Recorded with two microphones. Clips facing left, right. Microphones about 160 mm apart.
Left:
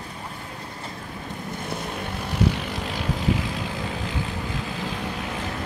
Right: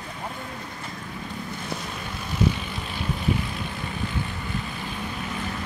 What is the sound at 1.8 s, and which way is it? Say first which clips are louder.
Vehicle: left 4 dB; 60° left (ahead or behind).